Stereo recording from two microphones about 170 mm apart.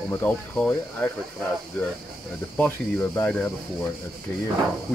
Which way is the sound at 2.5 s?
10° left (ahead or behind).